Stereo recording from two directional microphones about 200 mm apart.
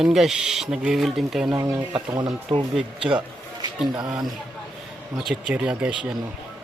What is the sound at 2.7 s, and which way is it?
Speech, 5° right (ahead or behind).